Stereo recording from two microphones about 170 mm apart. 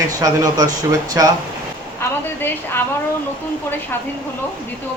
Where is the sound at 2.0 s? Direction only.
10° left (ahead or behind).